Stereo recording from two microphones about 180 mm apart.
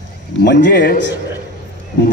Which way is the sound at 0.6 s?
55° left (ahead or behind).